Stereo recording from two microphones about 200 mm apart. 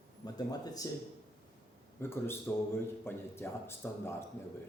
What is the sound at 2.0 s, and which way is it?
Speech, 10° left (ahead or behind).